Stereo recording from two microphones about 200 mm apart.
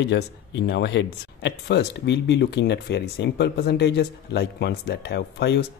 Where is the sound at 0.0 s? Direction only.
60° left (ahead or behind).